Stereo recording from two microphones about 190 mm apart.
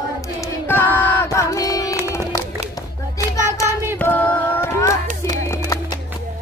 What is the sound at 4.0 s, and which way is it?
Female singing, 10° left (ahead or behind).